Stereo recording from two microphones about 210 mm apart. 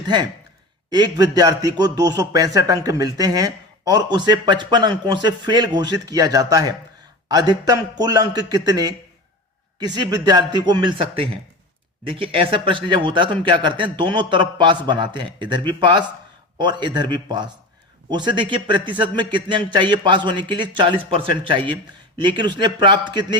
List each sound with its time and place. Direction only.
0.9 s a man's voice: 20° right (ahead or behind)